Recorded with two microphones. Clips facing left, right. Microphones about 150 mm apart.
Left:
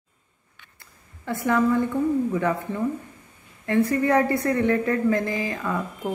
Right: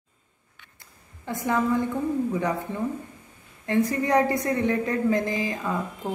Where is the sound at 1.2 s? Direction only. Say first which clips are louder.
Left 3 dB; 15° right (ahead or behind).